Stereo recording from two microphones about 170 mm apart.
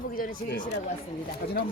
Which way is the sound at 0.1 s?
55° left (ahead or behind).